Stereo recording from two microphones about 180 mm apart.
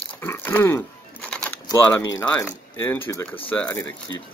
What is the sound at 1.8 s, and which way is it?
Speech, 15° left (ahead or behind).